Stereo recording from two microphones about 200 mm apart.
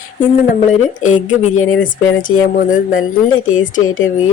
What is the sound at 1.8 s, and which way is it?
Speech, 40° left (ahead or behind).